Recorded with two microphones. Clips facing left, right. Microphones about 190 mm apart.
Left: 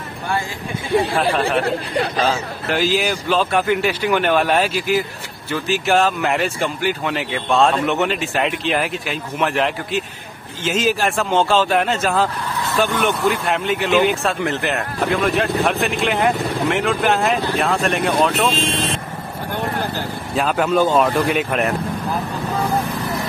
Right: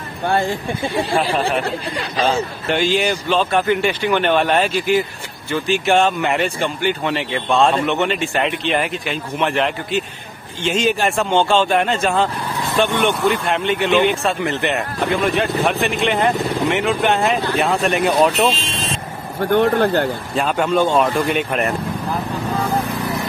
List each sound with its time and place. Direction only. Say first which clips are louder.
2.2 s speech: right 2 dB; centre (ahead or behind)
18.5 s speech: left 3 dB; 55° left (ahead or behind)
19.5 s speech: right 10 dB; 75° right (ahead or behind)
20.3 s speech: left 1 dB; 5° left (ahead or behind)